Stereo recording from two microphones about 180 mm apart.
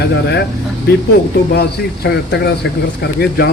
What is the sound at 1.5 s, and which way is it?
Speech, 65° left (ahead or behind).